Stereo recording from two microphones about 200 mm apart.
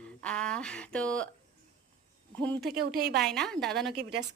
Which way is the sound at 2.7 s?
50° right (ahead or behind).